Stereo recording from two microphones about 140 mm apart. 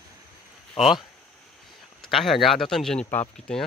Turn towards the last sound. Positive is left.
turn(degrees=5)  # may be behind; listen again after turning